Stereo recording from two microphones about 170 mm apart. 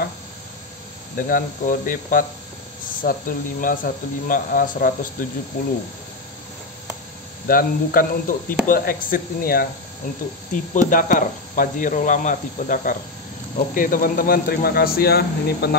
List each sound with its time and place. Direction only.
1.1 s speech: 55° left (ahead or behind)
7.4 s speech: 60° left (ahead or behind)